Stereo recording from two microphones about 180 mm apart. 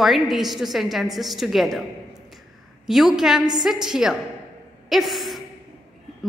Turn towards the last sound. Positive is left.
turn(degrees=0)  # may be behind; listen again after turning